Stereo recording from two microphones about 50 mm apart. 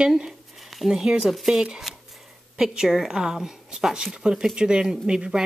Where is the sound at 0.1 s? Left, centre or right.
Centre.